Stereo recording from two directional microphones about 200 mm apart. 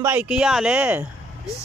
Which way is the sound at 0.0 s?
10° right (ahead or behind).